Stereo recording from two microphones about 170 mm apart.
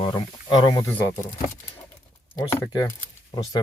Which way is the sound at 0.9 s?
15° left (ahead or behind).